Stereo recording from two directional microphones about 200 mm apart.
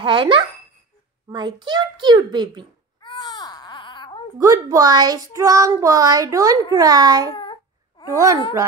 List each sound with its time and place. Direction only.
0.0 s a child's voice: 25° right (ahead or behind)
3.0 s baby cry: 20° left (ahead or behind)
4.4 s speech: 15° right (ahead or behind)